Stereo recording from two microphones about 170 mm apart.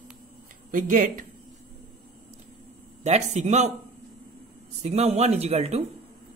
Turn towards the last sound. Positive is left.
turn(degrees=-40)  # may be behind; listen again after turning